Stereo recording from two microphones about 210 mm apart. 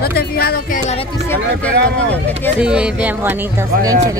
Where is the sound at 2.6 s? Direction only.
5° right (ahead or behind).